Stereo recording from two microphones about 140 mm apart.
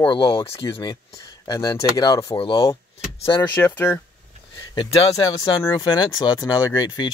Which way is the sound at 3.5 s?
15° left (ahead or behind).